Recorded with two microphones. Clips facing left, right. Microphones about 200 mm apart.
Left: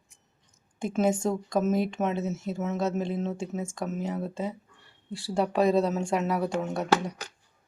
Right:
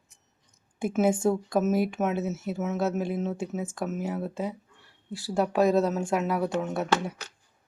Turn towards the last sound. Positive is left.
turn(degrees=0)  # may be behind; listen again after turning